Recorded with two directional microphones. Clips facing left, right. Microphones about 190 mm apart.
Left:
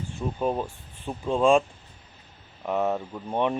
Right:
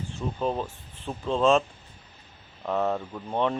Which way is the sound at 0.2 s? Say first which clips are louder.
Left 2 dB; 10° left (ahead or behind).